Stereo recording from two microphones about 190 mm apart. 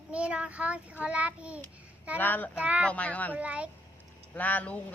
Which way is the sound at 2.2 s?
10° left (ahead or behind).